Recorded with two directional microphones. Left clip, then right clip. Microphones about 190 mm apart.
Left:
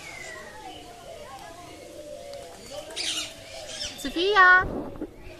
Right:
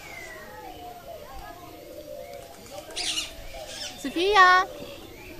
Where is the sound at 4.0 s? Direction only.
15° right (ahead or behind).